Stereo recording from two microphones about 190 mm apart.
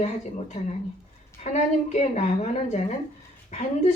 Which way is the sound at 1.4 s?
40° left (ahead or behind).